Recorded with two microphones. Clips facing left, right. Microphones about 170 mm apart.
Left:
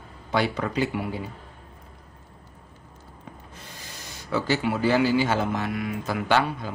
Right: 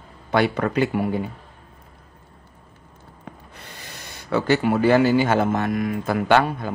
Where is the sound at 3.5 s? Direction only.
65° right (ahead or behind).